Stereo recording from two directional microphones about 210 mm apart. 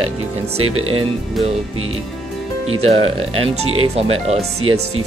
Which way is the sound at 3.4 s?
30° right (ahead or behind).